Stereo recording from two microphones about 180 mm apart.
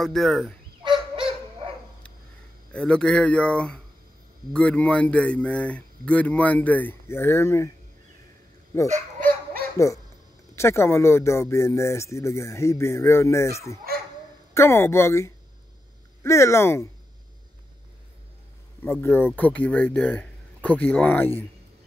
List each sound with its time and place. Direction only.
0.0 s speech: centre (ahead or behind)
0.8 s a sound: 25° right (ahead or behind)
2.7 s speech: 5° left (ahead or behind)
8.8 s dog: 45° right (ahead or behind)
10.5 s speech: 15° left (ahead or behind)
18.8 s speech: 10° left (ahead or behind)